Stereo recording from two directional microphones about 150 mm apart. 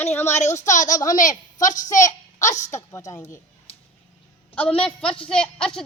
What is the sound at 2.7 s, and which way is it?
Speech, 20° left (ahead or behind).